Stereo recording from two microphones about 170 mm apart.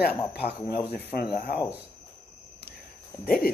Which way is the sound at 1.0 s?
65° left (ahead or behind).